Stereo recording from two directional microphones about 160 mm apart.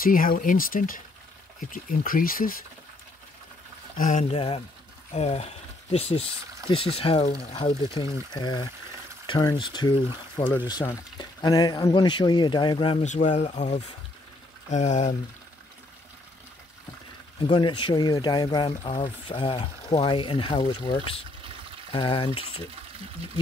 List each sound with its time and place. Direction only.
0.0 s speech: 60° left (ahead or behind)
3.9 s speech: 50° left (ahead or behind)
8.3 s speech: 25° left (ahead or behind)
10.8 s speech: 15° left (ahead or behind)
11.1 s speech: 25° left (ahead or behind)
13.0 s speech: 50° left (ahead or behind)
17.4 s speech: 30° left (ahead or behind)